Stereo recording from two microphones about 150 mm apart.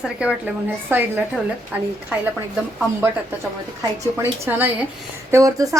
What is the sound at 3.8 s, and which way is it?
A woman's voice, 15° right (ahead or behind).